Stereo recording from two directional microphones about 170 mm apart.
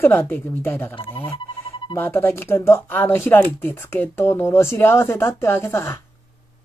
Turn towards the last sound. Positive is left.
turn(degrees=15)  # may be behind; listen again after turning